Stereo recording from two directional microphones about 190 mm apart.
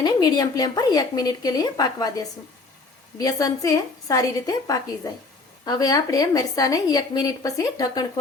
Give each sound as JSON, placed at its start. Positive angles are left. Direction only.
{"t": 0.0, "sound": "a woman's voice", "side_deg": 20}